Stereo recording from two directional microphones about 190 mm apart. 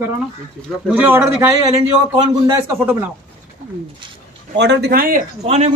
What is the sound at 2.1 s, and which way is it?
Speech, 25° right (ahead or behind).